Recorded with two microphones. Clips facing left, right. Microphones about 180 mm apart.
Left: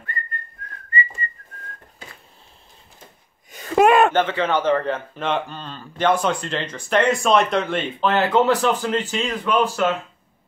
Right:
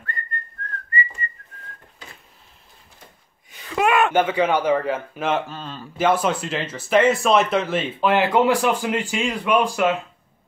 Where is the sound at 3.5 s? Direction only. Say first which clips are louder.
Left 5 dB; 45° left (ahead or behind).